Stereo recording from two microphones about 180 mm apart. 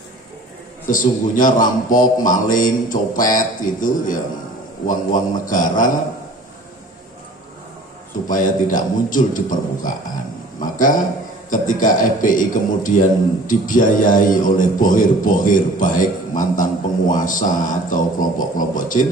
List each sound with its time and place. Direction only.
0.9 s a man's voice: 45° left (ahead or behind)
8.3 s a man's voice: 50° left (ahead or behind)